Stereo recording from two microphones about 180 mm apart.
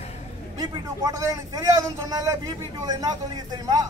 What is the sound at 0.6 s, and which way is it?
A man's voice, 20° right (ahead or behind).